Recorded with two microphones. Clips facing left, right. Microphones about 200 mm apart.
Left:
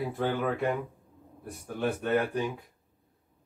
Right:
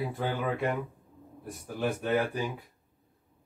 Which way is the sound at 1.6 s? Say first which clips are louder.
Left 1 dB; 5° right (ahead or behind).